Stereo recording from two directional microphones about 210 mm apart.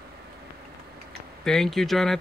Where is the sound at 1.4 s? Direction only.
Centre (ahead or behind).